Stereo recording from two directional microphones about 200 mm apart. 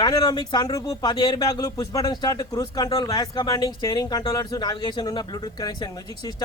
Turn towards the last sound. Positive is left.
turn(degrees=20)  # may be behind; listen again after turning